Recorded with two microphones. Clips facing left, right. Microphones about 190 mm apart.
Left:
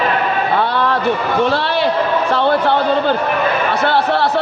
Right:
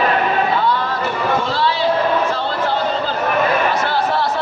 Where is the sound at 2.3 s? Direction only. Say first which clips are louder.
Left 6 dB; 65° left (ahead or behind).